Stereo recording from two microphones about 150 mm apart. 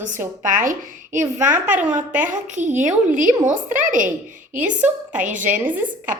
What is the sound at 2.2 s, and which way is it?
A woman's voice, 55° right (ahead or behind).